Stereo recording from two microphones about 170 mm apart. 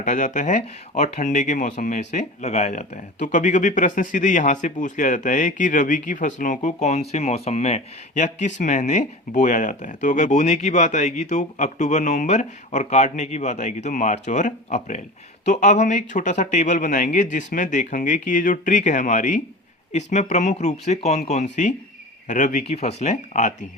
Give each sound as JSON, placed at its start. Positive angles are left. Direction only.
{"t": 0.0, "sound": "speech", "side_deg": 45}